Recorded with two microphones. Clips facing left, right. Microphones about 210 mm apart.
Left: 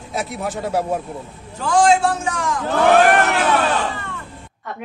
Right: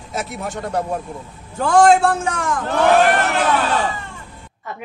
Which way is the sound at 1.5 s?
55° right (ahead or behind).